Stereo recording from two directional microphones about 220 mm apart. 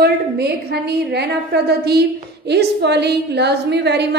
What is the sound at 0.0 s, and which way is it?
A woman's voice, 45° right (ahead or behind).